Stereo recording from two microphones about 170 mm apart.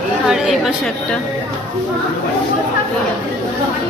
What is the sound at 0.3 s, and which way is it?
Speech, centre (ahead or behind).